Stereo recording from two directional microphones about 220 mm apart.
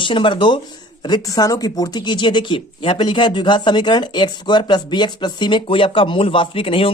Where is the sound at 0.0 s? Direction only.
20° left (ahead or behind).